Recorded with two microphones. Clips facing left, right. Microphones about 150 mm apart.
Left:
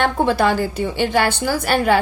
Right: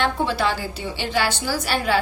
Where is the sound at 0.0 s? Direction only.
50° left (ahead or behind).